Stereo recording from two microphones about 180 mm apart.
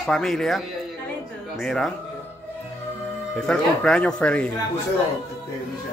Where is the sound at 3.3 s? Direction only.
5° left (ahead or behind).